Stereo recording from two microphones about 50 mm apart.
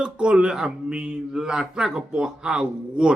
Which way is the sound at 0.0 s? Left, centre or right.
Centre.